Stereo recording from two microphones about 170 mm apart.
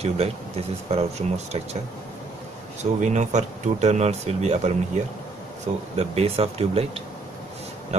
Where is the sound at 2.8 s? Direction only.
45° right (ahead or behind).